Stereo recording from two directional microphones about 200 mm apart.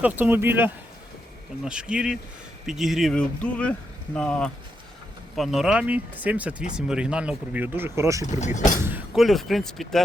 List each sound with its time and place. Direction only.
0.0 s speech: 10° right (ahead or behind)
8.3 s speech: 35° left (ahead or behind)
8.8 s speech: 10° right (ahead or behind)